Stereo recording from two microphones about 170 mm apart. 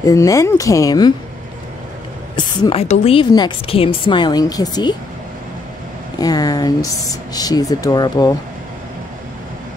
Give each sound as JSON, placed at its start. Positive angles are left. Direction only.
{"t": 0.0, "sound": "a woman's voice", "side_deg": 20}
{"t": 2.3, "sound": "a woman's voice", "side_deg": 30}
{"t": 6.1, "sound": "a woman's voice", "side_deg": 20}